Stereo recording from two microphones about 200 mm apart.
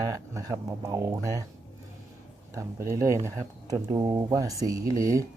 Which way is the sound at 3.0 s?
15° right (ahead or behind).